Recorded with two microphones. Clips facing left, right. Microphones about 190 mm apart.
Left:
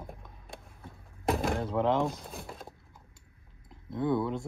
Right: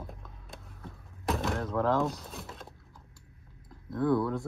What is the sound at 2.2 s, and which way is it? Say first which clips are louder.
Speech: left 1 dB; centre (ahead or behind).